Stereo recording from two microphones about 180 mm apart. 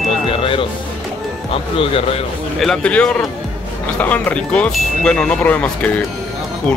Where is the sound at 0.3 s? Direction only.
30° left (ahead or behind).